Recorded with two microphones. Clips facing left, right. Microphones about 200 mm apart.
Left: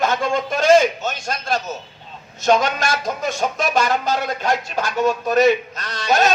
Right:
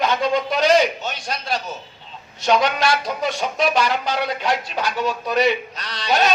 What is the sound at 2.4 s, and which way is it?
Speech, 45° left (ahead or behind).